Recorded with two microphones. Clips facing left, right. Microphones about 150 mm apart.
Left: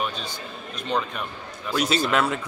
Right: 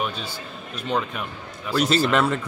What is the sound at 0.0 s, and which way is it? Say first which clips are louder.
A man's voice: right 1 dB; 5° right (ahead or behind).